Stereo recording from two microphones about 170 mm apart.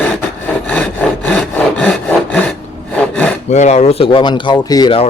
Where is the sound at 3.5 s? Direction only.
40° left (ahead or behind); by 5.0 s 25° left (ahead or behind).